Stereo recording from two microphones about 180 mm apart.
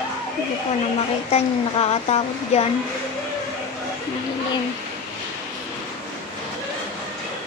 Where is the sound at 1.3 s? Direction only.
35° left (ahead or behind).